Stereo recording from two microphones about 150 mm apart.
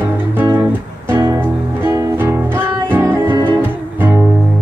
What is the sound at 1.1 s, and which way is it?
Music, 15° right (ahead or behind).